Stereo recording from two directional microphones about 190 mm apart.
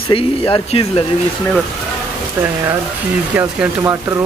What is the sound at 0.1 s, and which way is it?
Speech, 30° left (ahead or behind).